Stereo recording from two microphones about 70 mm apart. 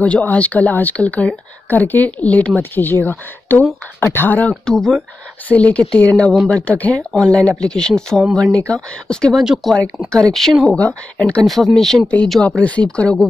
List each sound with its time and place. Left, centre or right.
0.0 s speech: left
4.6 s speech: centre
5.5 s speech: centre
10.8 s speech: centre
11.4 s speech: centre
12.4 s speech: centre